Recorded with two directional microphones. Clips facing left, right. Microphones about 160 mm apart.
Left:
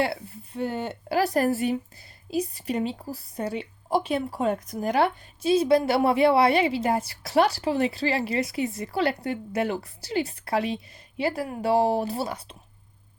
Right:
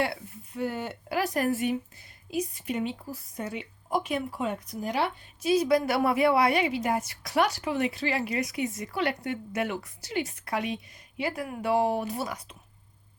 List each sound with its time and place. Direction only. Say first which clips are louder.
0.0 s a woman's voice: left 3 dB; 30° left (ahead or behind); by 5.0 s 50° left (ahead or behind)
5.4 s a woman's voice: left 3 dB; 30° left (ahead or behind)